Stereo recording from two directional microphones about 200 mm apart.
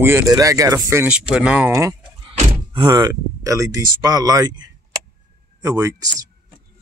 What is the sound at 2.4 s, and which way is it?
Speech, 25° right (ahead or behind).